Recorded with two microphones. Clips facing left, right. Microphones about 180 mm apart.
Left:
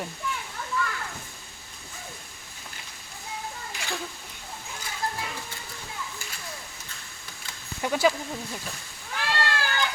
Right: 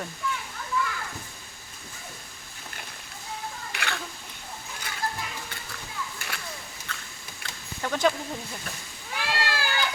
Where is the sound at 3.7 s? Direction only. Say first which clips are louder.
Right 2 dB; 65° right (ahead or behind).